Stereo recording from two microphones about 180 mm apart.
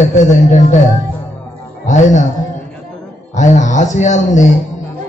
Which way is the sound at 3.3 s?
40° left (ahead or behind).